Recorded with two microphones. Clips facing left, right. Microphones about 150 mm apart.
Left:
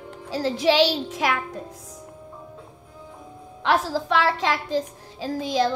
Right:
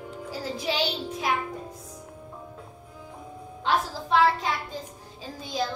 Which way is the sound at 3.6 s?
85° left.